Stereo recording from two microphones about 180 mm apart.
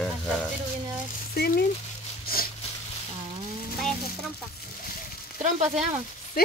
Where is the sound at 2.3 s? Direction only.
55° left (ahead or behind).